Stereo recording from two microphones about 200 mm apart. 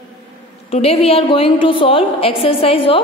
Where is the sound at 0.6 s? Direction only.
30° left (ahead or behind).